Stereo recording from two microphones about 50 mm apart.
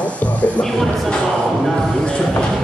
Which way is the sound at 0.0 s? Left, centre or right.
Left.